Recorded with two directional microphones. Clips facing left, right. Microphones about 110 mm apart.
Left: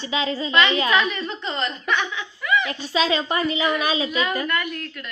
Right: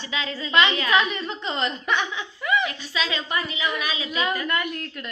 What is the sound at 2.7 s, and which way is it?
A woman's voice, 30° left (ahead or behind).